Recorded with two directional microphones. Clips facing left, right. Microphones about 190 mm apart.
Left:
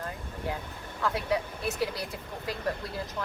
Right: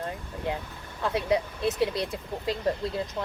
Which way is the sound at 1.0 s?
20° right (ahead or behind).